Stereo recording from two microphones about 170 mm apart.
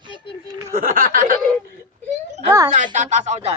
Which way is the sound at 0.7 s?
55° right (ahead or behind).